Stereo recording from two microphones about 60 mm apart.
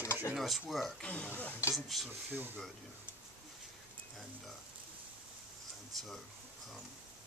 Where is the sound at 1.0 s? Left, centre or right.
Left.